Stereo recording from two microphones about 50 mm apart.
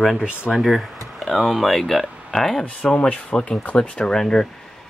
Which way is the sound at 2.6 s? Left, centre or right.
Left.